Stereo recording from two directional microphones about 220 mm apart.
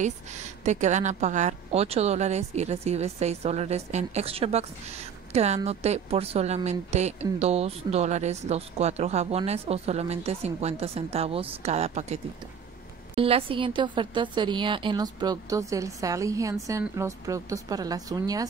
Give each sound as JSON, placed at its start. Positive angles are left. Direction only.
{"t": 0.0, "sound": "a woman's voice", "side_deg": -30}